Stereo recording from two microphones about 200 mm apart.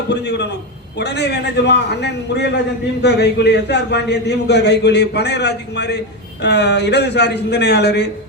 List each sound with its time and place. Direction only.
0.1 s a man's voice: 60° left (ahead or behind)